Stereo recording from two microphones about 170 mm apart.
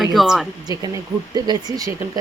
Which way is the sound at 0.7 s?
25° right (ahead or behind).